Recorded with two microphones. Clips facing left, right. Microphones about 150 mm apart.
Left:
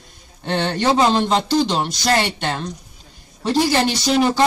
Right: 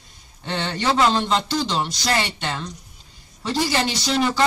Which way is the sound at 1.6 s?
55° left (ahead or behind).